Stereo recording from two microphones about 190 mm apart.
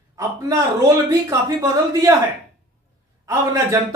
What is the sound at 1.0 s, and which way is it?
Speech, 15° right (ahead or behind).